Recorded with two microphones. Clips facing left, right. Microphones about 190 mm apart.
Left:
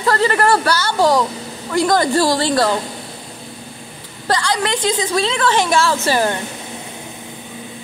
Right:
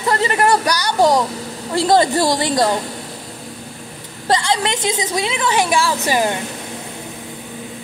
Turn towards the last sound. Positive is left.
turn(degrees=-15)  # may be behind; listen again after turning